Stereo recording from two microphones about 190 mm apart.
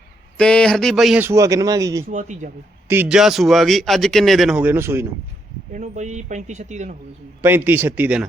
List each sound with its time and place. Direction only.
0.3 s a man's voice: 5° left (ahead or behind); by 2.0 s 15° right (ahead or behind)
2.0 s speech: 40° right (ahead or behind)
2.9 s speech: 5° right (ahead or behind)
5.7 s speech: 40° right (ahead or behind)
7.4 s a man's voice: 10° right (ahead or behind)